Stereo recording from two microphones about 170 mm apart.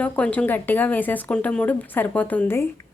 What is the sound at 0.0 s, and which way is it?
Speech, 10° left (ahead or behind).